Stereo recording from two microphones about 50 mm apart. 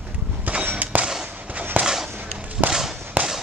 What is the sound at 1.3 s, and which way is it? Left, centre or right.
Fireworks, right.